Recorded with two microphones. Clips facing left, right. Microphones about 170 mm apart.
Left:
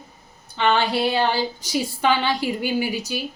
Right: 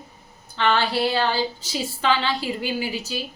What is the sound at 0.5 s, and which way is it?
A woman's voice, 15° left (ahead or behind).